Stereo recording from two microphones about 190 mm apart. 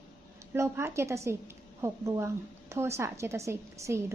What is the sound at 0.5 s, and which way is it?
A woman's voice, 15° right (ahead or behind).